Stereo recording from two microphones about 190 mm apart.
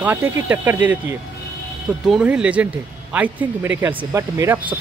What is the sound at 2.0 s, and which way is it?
Speech, 5° right (ahead or behind).